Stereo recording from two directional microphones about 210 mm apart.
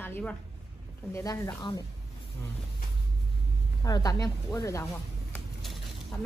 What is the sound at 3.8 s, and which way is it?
A woman's voice, 15° left (ahead or behind).